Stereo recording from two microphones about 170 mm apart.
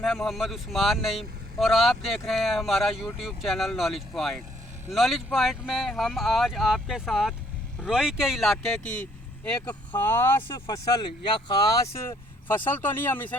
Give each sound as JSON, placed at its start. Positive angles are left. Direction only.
{"t": 0.0, "sound": "speech", "side_deg": 0}
{"t": 10.7, "sound": "speech", "side_deg": 25}